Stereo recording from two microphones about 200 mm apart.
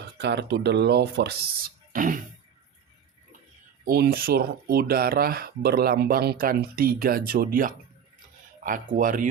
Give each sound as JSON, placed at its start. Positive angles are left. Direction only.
{"t": 0.0, "sound": "speech", "side_deg": -60}
{"t": 3.8, "sound": "speech", "side_deg": -50}